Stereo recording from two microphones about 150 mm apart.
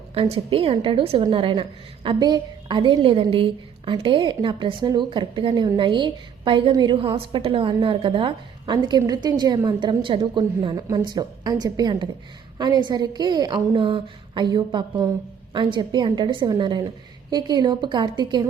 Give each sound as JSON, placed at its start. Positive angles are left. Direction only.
{"t": 0.1, "sound": "a woman's voice", "side_deg": -40}